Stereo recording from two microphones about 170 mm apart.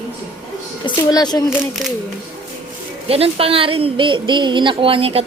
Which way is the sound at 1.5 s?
Centre (ahead or behind).